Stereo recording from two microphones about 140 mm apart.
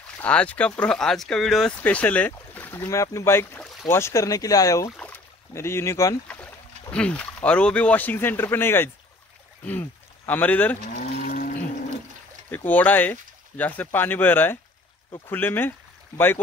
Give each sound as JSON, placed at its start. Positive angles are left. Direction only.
{"t": 0.2, "sound": "speech", "side_deg": 10}
{"t": 4.9, "sound": "speech", "side_deg": 10}
{"t": 6.9, "sound": "speech", "side_deg": 10}
{"t": 11.0, "sound": "moo", "side_deg": 75}
{"t": 12.4, "sound": "speech", "side_deg": 10}